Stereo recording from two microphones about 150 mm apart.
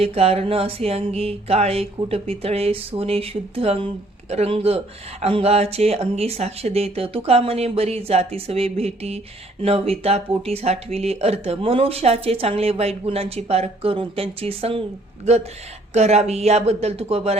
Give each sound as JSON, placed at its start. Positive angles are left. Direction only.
{"t": 0.0, "sound": "a sound", "side_deg": -40}
{"t": 5.2, "sound": "speech", "side_deg": -45}
{"t": 15.9, "sound": "speech", "side_deg": -45}